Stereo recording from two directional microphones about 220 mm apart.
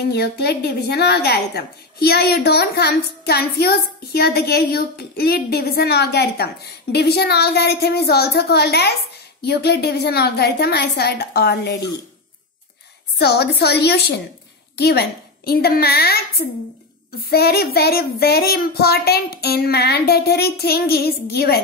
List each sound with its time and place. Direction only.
0.1 s a woman's voice: 45° left (ahead or behind)
13.2 s a woman's voice: 50° left (ahead or behind)